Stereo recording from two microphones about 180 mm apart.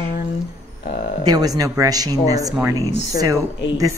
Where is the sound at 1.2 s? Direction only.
20° right (ahead or behind).